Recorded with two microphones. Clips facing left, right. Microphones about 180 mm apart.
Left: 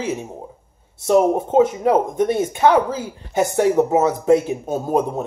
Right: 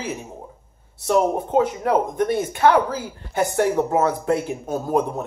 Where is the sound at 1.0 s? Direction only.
20° left (ahead or behind).